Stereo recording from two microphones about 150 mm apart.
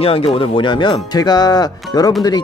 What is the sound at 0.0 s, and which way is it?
Speech, 40° left (ahead or behind).